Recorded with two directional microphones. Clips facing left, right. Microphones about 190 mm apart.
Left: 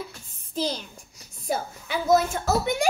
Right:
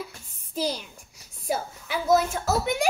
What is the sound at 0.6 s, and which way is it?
A child's voice, 10° right (ahead or behind).